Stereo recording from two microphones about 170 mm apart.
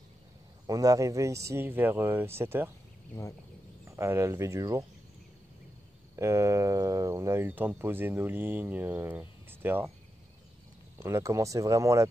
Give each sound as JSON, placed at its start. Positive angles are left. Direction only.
{"t": 0.7, "sound": "speech", "side_deg": -20}
{"t": 3.8, "sound": "speech", "side_deg": -15}
{"t": 6.1, "sound": "speech", "side_deg": -15}
{"t": 11.0, "sound": "speech", "side_deg": -15}